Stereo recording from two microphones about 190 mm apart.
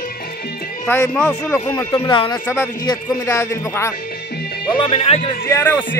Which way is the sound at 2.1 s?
25° left (ahead or behind).